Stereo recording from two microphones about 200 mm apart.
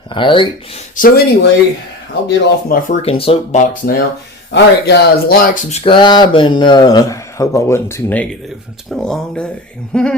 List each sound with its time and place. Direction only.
0.1 s speech: 25° left (ahead or behind)
0.9 s speech: 50° left (ahead or behind)
3.0 s speech: 30° left (ahead or behind)
4.5 s speech: 55° left (ahead or behind)
5.8 s speech: 25° left (ahead or behind); by 10.2 s 5° left (ahead or behind)